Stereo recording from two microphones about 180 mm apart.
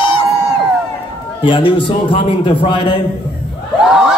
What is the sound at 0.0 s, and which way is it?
Crowd, 30° left (ahead or behind).